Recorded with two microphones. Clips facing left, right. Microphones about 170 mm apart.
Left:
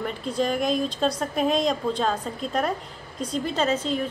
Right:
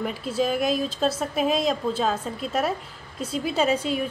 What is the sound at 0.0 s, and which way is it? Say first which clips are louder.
A woman's voice: right 1 dB; 5° right (ahead or behind).